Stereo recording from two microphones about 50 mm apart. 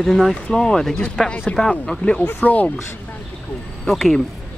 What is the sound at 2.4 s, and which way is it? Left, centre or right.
Speech, left.